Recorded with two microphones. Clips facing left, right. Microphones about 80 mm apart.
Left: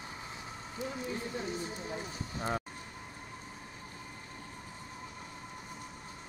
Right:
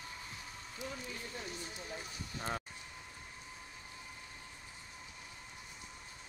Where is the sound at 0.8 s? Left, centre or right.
Left.